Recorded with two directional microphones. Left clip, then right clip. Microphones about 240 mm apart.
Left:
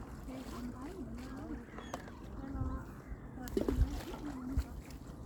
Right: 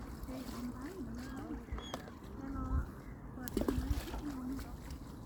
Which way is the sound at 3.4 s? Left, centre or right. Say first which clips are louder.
Left 1 dB; centre.